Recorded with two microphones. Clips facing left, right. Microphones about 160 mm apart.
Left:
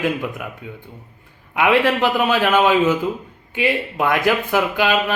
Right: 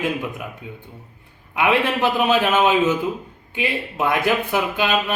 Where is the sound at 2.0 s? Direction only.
20° right (ahead or behind).